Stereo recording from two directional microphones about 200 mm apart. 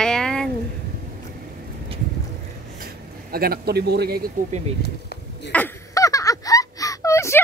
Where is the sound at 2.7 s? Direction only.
50° right (ahead or behind).